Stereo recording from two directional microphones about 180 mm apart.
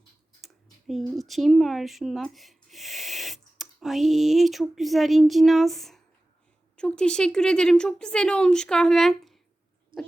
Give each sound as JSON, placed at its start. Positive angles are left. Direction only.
{"t": 0.4, "sound": "a woman's voice", "side_deg": 0}
{"t": 9.9, "sound": "speech", "side_deg": -30}